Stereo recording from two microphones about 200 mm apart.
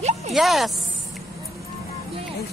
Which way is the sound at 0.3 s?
Centre (ahead or behind).